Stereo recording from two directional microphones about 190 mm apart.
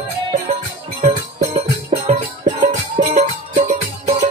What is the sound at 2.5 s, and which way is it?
Music, 45° right (ahead or behind).